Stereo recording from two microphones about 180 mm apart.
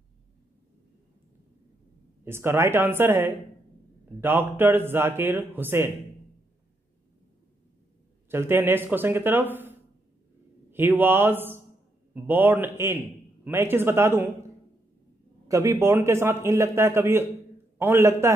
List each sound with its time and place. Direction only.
2.2 s a man's voice: 15° right (ahead or behind)
8.3 s a man's voice: 15° right (ahead or behind)
15.4 s a man's voice: 15° right (ahead or behind)